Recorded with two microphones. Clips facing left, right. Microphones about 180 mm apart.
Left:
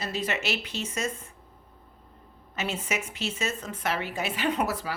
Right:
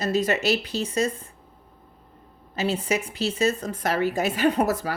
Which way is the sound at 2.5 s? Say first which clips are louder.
Right 6 dB; 30° right (ahead or behind).